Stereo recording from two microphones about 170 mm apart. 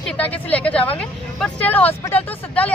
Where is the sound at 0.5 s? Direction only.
10° left (ahead or behind).